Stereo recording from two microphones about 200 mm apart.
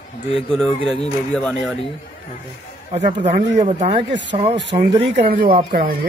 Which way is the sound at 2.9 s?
30° right (ahead or behind).